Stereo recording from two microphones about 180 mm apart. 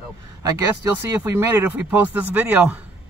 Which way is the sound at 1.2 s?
15° right (ahead or behind).